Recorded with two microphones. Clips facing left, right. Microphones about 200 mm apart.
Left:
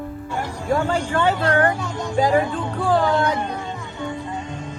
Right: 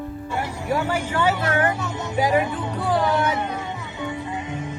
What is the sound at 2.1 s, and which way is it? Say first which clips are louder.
Music: left 2 dB; 20° right (ahead or behind).